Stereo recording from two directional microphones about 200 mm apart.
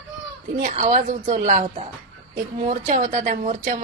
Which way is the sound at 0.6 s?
40° right (ahead or behind).